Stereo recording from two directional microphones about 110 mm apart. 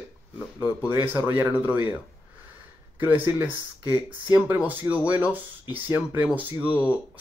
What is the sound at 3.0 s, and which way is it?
A man's voice, 15° right (ahead or behind).